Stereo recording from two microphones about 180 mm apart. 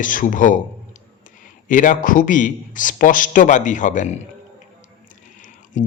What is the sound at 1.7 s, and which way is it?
A man's voice, 45° left (ahead or behind).